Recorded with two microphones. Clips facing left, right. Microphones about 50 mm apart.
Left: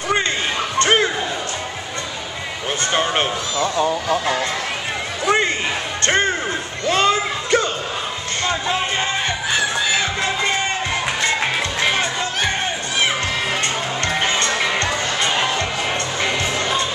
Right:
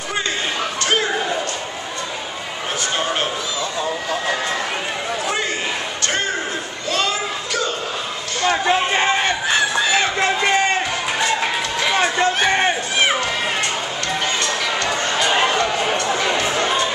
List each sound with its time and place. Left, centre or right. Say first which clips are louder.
0.7 s a sound: left 5 dB; left
6.9 s children playing: left 4 dB; left
8.5 s music: right 5 dB; right
9.5 s a sound: right 1 dB; right
14.0 s music: left 2 dB; left
15.1 s music: right 5 dB; centre